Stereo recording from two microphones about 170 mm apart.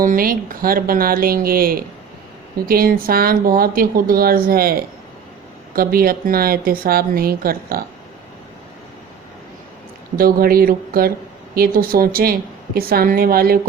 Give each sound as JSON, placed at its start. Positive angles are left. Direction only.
{"t": 0.0, "sound": "speech", "side_deg": -55}
{"t": 10.2, "sound": "speech", "side_deg": -60}